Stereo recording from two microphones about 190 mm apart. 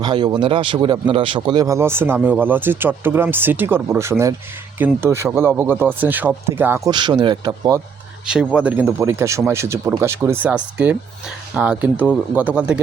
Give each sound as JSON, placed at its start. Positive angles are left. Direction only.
{"t": 0.0, "sound": "speech", "side_deg": -25}
{"t": 8.3, "sound": "speech", "side_deg": -5}